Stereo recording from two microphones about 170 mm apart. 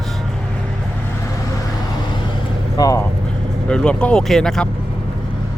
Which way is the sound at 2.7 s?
20° left (ahead or behind).